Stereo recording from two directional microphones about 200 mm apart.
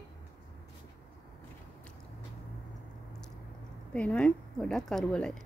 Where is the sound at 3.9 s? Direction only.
5° left (ahead or behind).